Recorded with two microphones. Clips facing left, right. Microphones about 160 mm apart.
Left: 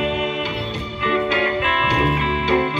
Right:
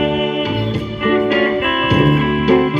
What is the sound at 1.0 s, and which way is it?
Music, 55° right (ahead or behind).